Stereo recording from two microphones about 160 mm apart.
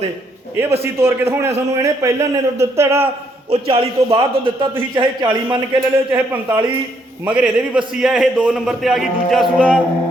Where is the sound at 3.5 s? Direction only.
35° right (ahead or behind).